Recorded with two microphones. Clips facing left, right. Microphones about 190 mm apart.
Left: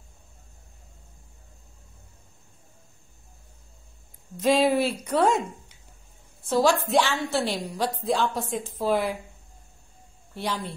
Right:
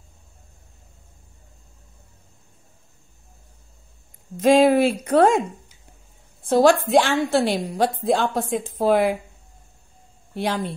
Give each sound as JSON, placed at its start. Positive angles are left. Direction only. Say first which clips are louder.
{"t": 4.6, "sound": "a woman's voice", "louder": "right 6 dB", "side_deg": -55}
{"t": 6.4, "sound": "a woman's voice", "louder": "right 6 dB", "side_deg": -55}
{"t": 10.3, "sound": "a woman's voice", "louder": "right 6 dB", "side_deg": -55}